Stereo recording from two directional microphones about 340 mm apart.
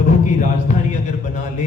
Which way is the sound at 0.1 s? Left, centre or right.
Left.